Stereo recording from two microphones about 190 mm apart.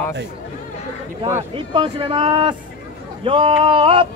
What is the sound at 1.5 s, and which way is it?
Speech, 25° right (ahead or behind).